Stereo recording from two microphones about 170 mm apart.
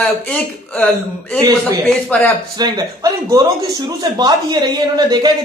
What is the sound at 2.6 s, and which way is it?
Speech, 25° right (ahead or behind).